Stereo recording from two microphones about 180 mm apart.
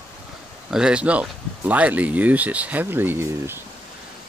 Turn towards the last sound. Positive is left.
turn(degrees=-10)  # may be behind; listen again after turning